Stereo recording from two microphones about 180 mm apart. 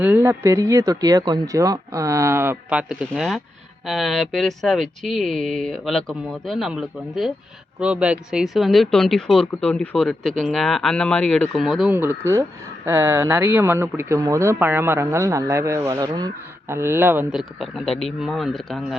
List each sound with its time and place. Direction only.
0.0 s speech: 10° right (ahead or behind)
2.9 s speech: centre (ahead or behind)
11.9 s speech: 15° right (ahead or behind)
17.6 s speech: centre (ahead or behind)